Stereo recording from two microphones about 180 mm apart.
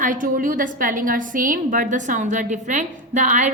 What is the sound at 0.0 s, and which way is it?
A woman's voice, 45° right (ahead or behind).